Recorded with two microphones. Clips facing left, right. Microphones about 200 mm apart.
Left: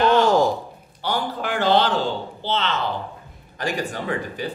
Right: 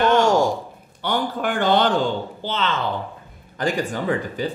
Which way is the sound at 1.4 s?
50° right (ahead or behind).